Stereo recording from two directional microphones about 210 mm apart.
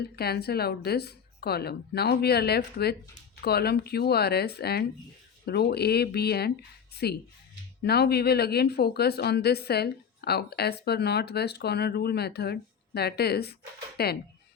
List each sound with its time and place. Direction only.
0.0 s a woman's voice: 50° left (ahead or behind)